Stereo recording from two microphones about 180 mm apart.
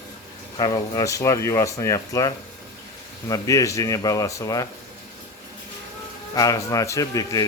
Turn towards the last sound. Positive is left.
turn(degrees=20)  # may be behind; listen again after turning